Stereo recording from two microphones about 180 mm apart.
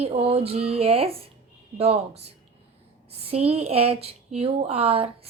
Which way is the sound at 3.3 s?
35° right (ahead or behind).